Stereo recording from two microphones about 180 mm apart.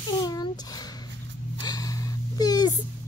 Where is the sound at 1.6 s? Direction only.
20° left (ahead or behind).